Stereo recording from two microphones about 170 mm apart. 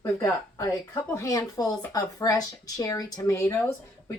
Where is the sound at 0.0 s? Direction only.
15° left (ahead or behind).